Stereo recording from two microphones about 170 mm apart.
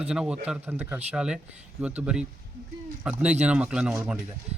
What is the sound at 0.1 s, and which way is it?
Speech, 5° right (ahead or behind).